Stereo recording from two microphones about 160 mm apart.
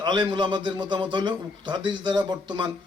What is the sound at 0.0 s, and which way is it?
A man's voice, 25° right (ahead or behind).